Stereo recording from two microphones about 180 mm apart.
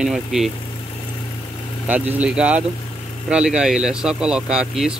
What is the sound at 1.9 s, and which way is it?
Speech, 10° right (ahead or behind).